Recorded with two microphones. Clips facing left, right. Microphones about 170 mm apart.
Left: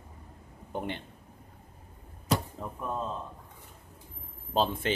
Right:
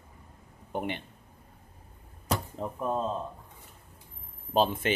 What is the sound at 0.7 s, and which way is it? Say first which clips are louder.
Speech: right 2 dB; 15° right (ahead or behind).